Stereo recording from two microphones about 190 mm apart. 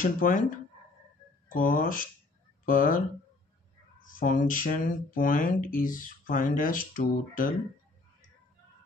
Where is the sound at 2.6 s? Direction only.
45° left (ahead or behind).